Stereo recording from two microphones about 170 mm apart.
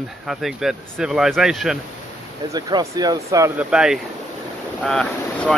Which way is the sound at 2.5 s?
25° right (ahead or behind).